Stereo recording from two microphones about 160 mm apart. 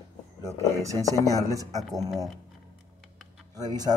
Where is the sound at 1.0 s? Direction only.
20° left (ahead or behind).